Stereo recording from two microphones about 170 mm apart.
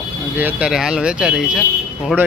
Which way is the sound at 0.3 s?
10° right (ahead or behind).